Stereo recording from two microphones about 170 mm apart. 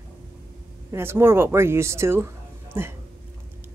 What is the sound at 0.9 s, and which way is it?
Speech, 15° right (ahead or behind).